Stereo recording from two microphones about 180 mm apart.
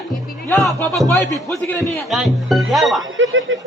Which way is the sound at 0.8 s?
10° left (ahead or behind).